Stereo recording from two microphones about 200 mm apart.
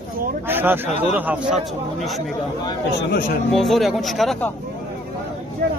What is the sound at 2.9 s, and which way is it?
Speech, 55° left (ahead or behind).